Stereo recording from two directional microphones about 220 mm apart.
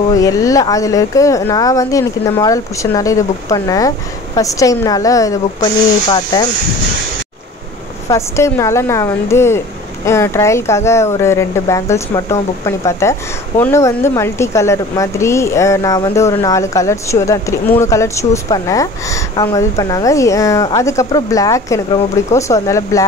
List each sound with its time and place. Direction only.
0.2 s speech: 15° left (ahead or behind)
8.1 s speech: 15° left (ahead or behind)